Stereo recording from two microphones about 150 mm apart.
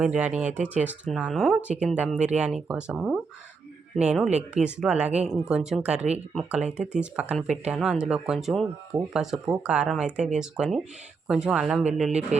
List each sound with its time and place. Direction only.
0.0 s speech: 10° right (ahead or behind)
0.4 s speech: 50° right (ahead or behind)
0.9 s speech: 5° right (ahead or behind)